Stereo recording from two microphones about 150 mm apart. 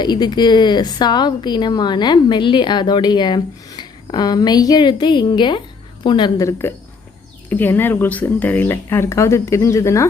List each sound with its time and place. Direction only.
0.0 s speech: 30° left (ahead or behind)